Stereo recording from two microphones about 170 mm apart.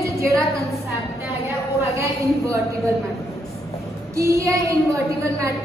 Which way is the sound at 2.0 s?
20° right (ahead or behind).